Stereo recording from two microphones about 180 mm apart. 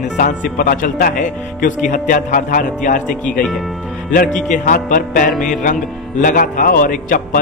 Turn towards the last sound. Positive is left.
turn(degrees=50)  # may be behind; listen again after turning